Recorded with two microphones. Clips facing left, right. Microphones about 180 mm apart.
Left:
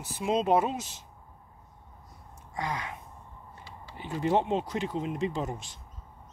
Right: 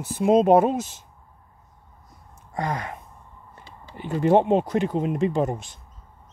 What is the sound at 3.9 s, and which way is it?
Speech, 55° right (ahead or behind).